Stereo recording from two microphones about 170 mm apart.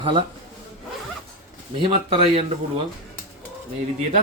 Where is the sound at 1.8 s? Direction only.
35° right (ahead or behind).